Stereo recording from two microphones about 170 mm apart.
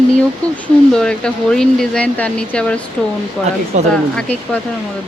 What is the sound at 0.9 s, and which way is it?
Speech, 5° left (ahead or behind).